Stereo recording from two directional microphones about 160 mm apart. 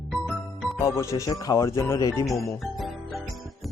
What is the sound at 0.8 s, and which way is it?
Speech, 15° left (ahead or behind).